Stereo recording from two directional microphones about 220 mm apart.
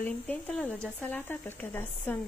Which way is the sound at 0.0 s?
5° left (ahead or behind).